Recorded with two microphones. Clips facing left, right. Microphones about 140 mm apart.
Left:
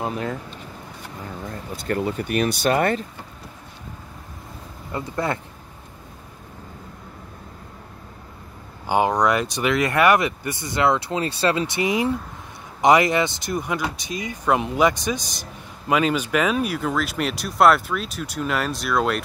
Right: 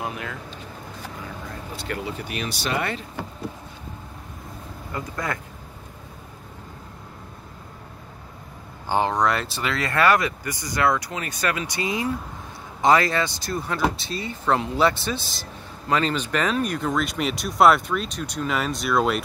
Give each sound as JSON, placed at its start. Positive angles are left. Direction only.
{"t": 0.0, "sound": "speech", "side_deg": 35}
{"t": 1.8, "sound": "speech", "side_deg": 45}
{"t": 4.9, "sound": "speech", "side_deg": 25}
{"t": 8.8, "sound": "speech", "side_deg": 15}